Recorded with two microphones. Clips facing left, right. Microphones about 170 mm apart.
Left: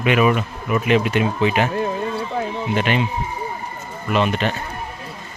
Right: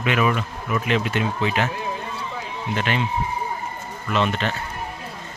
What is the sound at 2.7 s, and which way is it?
Speech, 15° left (ahead or behind).